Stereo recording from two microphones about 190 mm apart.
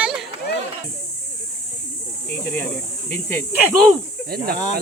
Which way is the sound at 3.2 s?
10° left (ahead or behind).